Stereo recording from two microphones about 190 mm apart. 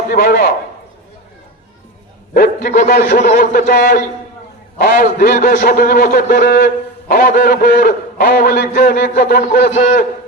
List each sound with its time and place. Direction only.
0.1 s a man's voice: 50° left (ahead or behind)
2.3 s a man's voice: 45° left (ahead or behind)